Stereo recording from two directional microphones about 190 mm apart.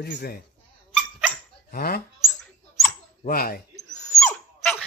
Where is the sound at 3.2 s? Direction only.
50° left (ahead or behind).